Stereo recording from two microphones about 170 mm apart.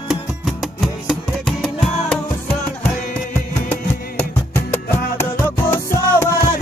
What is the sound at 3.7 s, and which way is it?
Music, 10° left (ahead or behind).